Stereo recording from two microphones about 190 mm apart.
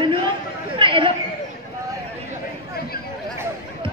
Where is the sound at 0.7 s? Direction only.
25° right (ahead or behind).